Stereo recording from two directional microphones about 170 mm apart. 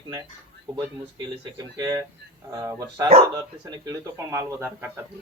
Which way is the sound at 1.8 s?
20° right (ahead or behind).